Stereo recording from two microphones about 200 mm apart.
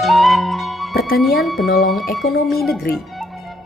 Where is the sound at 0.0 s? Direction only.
Centre (ahead or behind).